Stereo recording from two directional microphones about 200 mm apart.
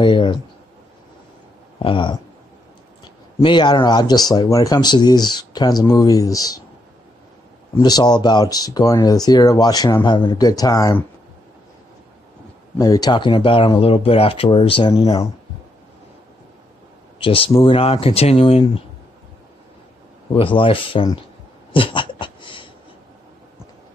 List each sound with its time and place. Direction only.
0.0 s speech: 25° left (ahead or behind)
1.8 s speech: 25° left (ahead or behind)
3.4 s speech: 25° left (ahead or behind)
7.7 s speech: 20° left (ahead or behind)
12.7 s speech: 20° left (ahead or behind)
17.2 s speech: 25° left (ahead or behind)
20.3 s speech: 25° left (ahead or behind)
21.7 s a sound: 25° left (ahead or behind)